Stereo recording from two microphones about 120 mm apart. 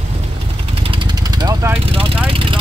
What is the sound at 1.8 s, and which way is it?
Vehicle, 50° right (ahead or behind).